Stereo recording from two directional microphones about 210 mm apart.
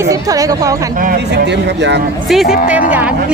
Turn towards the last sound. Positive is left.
turn(degrees=-5)  # may be behind; listen again after turning